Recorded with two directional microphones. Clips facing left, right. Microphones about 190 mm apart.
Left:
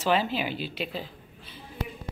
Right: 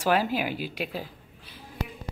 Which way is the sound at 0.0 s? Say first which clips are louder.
Right 1 dB; 10° right (ahead or behind).